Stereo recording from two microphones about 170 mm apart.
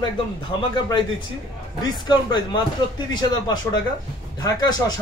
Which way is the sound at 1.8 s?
25° left (ahead or behind).